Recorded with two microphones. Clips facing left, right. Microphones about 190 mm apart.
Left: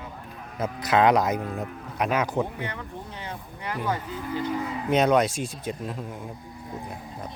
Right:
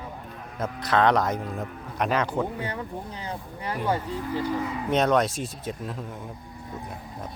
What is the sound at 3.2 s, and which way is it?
Speech, 30° right (ahead or behind).